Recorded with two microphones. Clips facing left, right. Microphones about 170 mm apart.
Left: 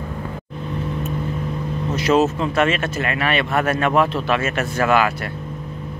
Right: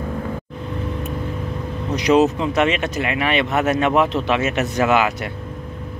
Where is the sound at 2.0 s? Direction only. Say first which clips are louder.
Right 2 dB; 15° right (ahead or behind).